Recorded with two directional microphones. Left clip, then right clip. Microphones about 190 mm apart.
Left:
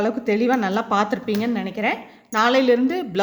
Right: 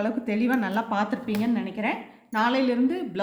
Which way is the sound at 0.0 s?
50° left (ahead or behind).